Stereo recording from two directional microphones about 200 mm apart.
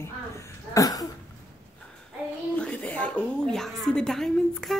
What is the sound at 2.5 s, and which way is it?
A woman's voice, 5° left (ahead or behind).